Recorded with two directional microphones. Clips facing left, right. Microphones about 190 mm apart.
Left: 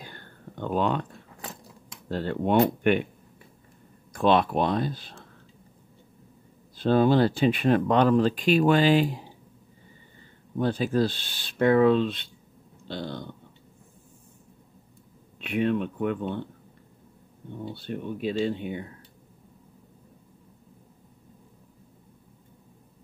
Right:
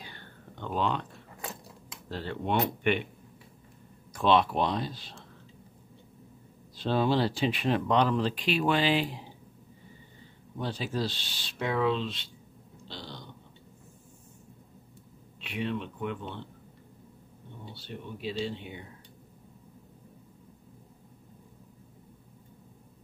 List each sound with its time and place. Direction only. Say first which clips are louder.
0.0 s a sound: left 4 dB; 50° left (ahead or behind)
2.0 s speech: left 7 dB; 50° left (ahead or behind)
4.1 s speech: left 3 dB; 50° left (ahead or behind)
6.8 s speech: left 6 dB; 50° left (ahead or behind)
10.6 s speech: left 8 dB; 55° left (ahead or behind)
12.8 s a sound: left 10 dB; 55° left (ahead or behind)
15.4 s speech: left 8 dB; 55° left (ahead or behind)
17.7 s speech: left 7 dB; 55° left (ahead or behind)